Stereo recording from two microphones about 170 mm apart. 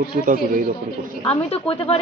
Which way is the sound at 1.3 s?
35° left (ahead or behind).